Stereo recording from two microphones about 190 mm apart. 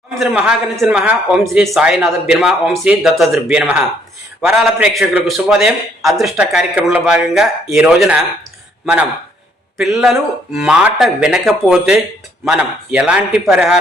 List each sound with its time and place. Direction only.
0.1 s speech: 5° right (ahead or behind)
9.7 s speech: centre (ahead or behind)